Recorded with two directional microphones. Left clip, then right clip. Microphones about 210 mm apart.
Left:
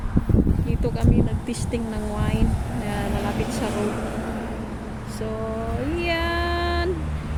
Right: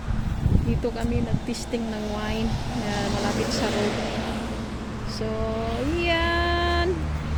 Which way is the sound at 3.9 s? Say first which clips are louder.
Right 1 dB; 40° left (ahead or behind).